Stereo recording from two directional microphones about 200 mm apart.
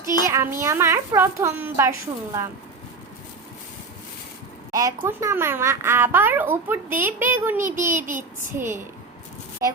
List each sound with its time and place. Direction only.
0.0 s a sound: 20° left (ahead or behind)
0.6 s a child's voice: 15° right (ahead or behind)
4.7 s a child's voice: 15° right (ahead or behind)
8.1 s a child's voice: 40° right (ahead or behind)
9.6 s a woman's voice: 15° right (ahead or behind)